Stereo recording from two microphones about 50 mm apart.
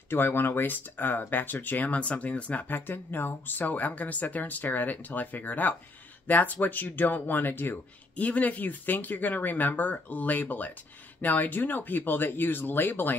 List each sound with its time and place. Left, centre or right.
0.1 s speech: left
2.7 s speech: left
8.2 s speech: left